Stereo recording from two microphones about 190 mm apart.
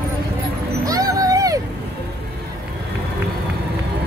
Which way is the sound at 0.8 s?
20° right (ahead or behind).